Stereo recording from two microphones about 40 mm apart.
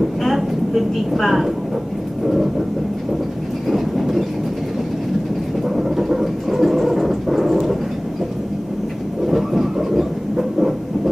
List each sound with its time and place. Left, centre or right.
0.2 s vehicle: centre
1.1 s speech: centre
2.2 s vehicle: centre
3.6 s train: centre
5.8 s music: centre
9.3 s train: centre